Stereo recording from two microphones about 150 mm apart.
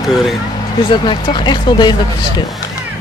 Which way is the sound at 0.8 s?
35° left (ahead or behind).